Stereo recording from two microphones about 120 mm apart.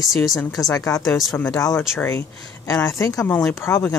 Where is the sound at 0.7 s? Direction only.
30° left (ahead or behind).